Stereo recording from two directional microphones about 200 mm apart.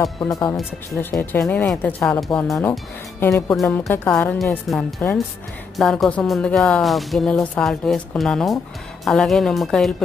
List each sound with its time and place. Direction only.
0.0 s speech: 15° left (ahead or behind)
0.6 s speech: 5° left (ahead or behind)
3.5 s speech: centre (ahead or behind)